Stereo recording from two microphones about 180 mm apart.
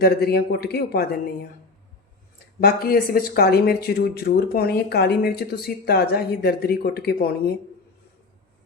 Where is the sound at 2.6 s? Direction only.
55° left (ahead or behind).